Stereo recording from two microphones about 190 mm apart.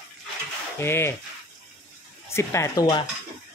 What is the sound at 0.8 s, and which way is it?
Speech, 10° left (ahead or behind).